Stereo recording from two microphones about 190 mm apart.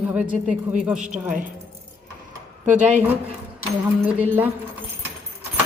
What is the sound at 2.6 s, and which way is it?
Speech, 40° right (ahead or behind).